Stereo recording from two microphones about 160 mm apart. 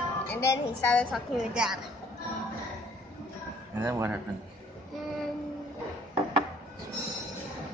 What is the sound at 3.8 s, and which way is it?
Speech, 15° right (ahead or behind).